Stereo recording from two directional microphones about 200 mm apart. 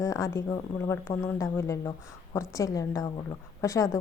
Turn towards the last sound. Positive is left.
turn(degrees=15)  # may be behind; listen again after turning